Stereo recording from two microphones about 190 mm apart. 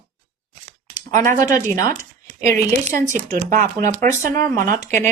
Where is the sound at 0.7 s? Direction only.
40° right (ahead or behind).